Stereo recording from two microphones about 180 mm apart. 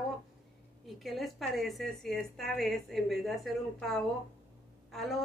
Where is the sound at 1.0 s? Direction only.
Centre (ahead or behind).